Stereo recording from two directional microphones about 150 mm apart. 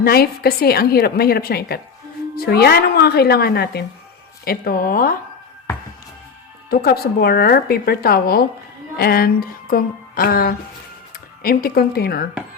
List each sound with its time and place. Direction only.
0.0 s speech: 90° left
4.4 s speech: 80° left
6.7 s speech: 90° left
9.0 s a sound: 90° left
11.4 s speech: 80° left